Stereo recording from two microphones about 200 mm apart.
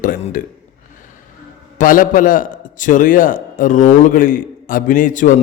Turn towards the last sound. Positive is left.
turn(degrees=40)  # may be behind; listen again after turning